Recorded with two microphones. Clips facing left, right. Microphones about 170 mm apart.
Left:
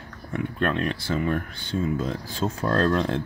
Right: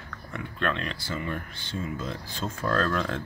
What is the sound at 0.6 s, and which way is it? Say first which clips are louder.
Speech: left 4 dB; 45° left (ahead or behind).